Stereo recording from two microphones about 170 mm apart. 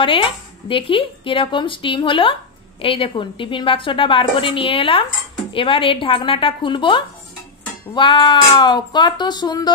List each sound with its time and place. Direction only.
0.0 s speech: 30° left (ahead or behind)